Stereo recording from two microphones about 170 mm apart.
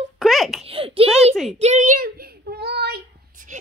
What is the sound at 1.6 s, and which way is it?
Child singing, 45° right (ahead or behind).